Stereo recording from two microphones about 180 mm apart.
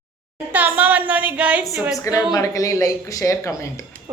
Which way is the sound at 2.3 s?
20° left (ahead or behind).